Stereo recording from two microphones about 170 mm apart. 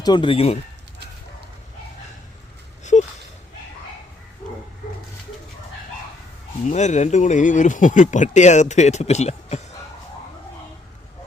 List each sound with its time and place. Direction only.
0.0 s speech: 25° left (ahead or behind)
2.9 s a sound: 45° left (ahead or behind)
6.7 s speech: 45° left (ahead or behind)